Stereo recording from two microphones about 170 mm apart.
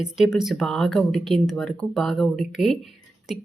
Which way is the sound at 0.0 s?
5° right (ahead or behind).